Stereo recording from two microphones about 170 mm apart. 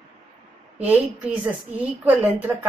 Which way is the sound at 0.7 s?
10° right (ahead or behind).